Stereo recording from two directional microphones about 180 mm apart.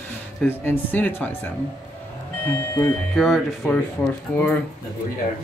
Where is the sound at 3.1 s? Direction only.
Centre (ahead or behind).